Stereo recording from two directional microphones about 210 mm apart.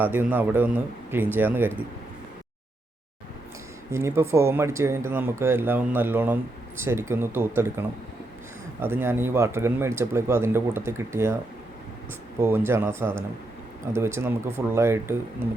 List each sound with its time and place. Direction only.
0.0 s speech: 10° right (ahead or behind)
3.9 s speech: 10° right (ahead or behind)
12.4 s speech: 10° right (ahead or behind)